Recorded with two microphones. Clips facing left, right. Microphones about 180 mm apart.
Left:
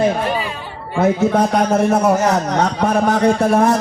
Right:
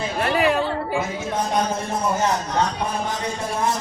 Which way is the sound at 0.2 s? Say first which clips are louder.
Right 2 dB; 75° right (ahead or behind).